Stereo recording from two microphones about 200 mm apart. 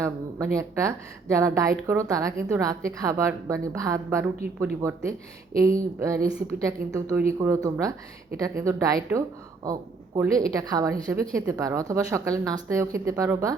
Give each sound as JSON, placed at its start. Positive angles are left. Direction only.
{"t": 0.0, "sound": "a woman's voice", "side_deg": -15}